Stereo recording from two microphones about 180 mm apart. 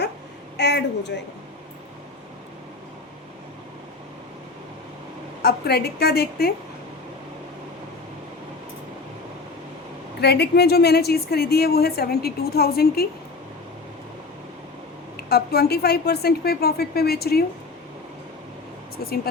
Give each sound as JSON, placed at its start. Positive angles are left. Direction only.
{"t": 0.5, "sound": "a woman's voice", "side_deg": 70}
{"t": 5.4, "sound": "a woman's voice", "side_deg": 65}
{"t": 10.2, "sound": "a woman's voice", "side_deg": 65}
{"t": 15.1, "sound": "a woman's voice", "side_deg": 60}
{"t": 19.0, "sound": "a woman's voice", "side_deg": 60}